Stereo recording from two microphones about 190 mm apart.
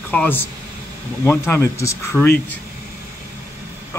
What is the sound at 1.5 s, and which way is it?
Speech, 15° left (ahead or behind).